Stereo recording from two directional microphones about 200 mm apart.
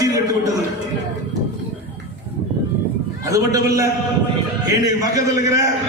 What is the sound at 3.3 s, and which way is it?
A man's voice, 15° right (ahead or behind).